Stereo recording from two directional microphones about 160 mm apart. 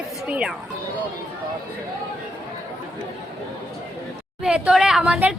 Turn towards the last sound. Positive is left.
turn(degrees=-5)  # may be behind; listen again after turning